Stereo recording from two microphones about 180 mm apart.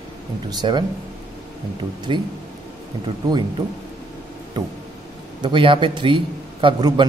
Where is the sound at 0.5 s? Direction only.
25° right (ahead or behind).